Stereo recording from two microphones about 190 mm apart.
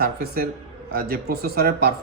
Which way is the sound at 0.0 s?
55° right (ahead or behind).